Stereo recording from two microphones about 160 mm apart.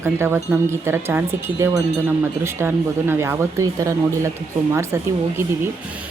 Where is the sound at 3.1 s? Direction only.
15° right (ahead or behind).